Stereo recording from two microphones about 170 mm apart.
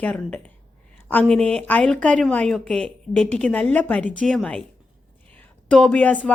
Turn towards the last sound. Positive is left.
turn(degrees=10)  # may be behind; listen again after turning